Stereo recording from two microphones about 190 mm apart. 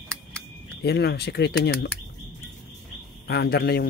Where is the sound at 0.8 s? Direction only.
60° left (ahead or behind).